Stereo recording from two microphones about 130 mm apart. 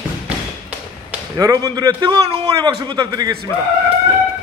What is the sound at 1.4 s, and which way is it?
Speech, 25° right (ahead or behind).